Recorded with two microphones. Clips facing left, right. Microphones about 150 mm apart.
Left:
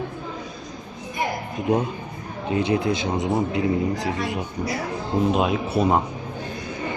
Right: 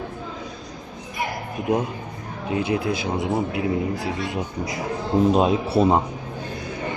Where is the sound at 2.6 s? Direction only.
5° right (ahead or behind).